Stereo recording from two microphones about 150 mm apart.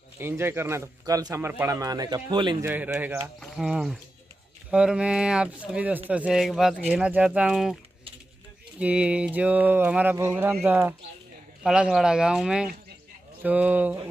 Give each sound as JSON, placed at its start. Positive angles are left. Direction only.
{"t": 0.2, "sound": "speech", "side_deg": -15}
{"t": 2.6, "sound": "speech", "side_deg": -10}